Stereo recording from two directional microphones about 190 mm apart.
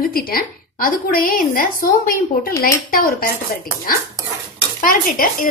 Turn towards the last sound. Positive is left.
turn(degrees=50)  # may be behind; listen again after turning